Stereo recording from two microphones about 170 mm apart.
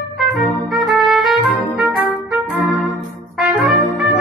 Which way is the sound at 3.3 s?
5° right (ahead or behind).